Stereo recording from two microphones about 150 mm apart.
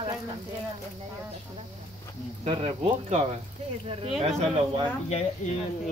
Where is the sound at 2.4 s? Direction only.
45° right (ahead or behind).